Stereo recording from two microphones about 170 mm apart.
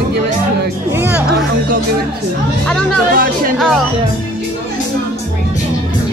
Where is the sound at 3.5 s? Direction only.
Centre (ahead or behind).